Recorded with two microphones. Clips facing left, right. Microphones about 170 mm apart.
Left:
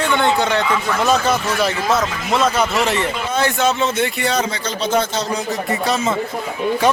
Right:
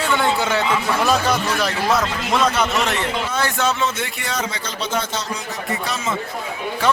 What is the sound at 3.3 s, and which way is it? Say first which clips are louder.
Speech: left 5 dB; 20° left (ahead or behind).